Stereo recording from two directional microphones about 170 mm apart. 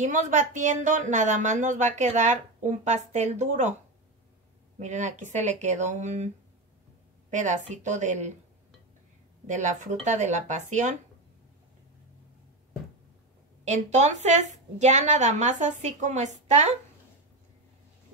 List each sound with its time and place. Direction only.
0.0 s speech: 45° right (ahead or behind)
4.7 s speech: 45° right (ahead or behind)
9.5 s speech: 45° right (ahead or behind)
13.7 s speech: 45° right (ahead or behind)